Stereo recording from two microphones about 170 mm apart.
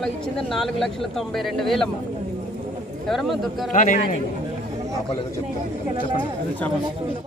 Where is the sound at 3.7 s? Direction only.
50° left (ahead or behind).